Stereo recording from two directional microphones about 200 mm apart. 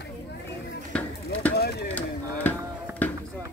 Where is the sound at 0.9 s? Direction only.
5° left (ahead or behind).